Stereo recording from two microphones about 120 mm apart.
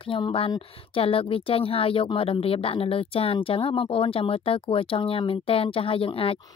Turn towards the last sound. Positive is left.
turn(degrees=50)  # may be behind; listen again after turning